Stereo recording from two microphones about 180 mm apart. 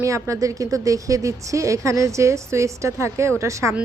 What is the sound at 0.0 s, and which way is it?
A woman's voice, 15° right (ahead or behind).